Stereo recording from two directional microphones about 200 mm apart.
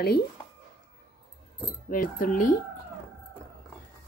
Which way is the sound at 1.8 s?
45° left (ahead or behind).